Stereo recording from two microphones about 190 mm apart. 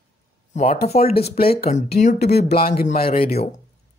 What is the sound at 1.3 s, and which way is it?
Speech, 50° left (ahead or behind).